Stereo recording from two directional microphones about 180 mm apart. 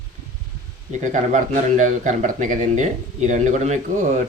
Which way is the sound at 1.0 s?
40° right (ahead or behind).